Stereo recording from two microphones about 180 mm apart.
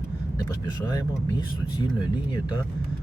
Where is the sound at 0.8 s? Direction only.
20° left (ahead or behind).